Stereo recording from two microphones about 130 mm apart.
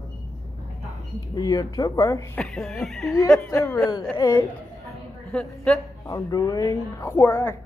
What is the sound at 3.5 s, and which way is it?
Speech, 25° left (ahead or behind).